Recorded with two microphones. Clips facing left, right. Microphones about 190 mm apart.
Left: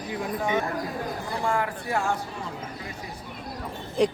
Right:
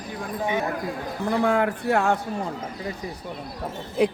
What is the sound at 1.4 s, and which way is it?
Speech, 65° right (ahead or behind).